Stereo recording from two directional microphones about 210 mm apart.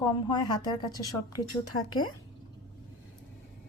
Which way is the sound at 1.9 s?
90° left.